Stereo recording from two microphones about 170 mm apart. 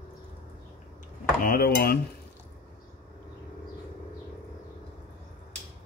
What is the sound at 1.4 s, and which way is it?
Cutlery, 65° left (ahead or behind).